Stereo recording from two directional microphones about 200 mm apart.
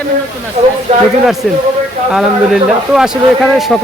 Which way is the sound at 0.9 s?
30° right (ahead or behind).